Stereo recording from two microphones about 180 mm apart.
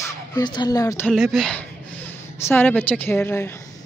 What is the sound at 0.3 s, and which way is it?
Speech, 25° left (ahead or behind).